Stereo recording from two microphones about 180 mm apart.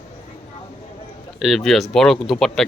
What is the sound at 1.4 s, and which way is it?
Speech, centre (ahead or behind).